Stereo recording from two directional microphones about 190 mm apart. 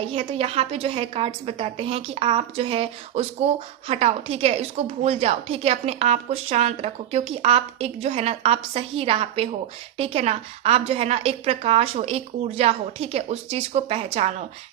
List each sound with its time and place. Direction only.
0.0 s a woman's voice: 30° right (ahead or behind)